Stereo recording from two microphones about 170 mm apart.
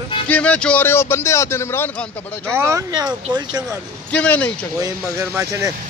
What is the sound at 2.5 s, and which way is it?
Speech, 15° right (ahead or behind).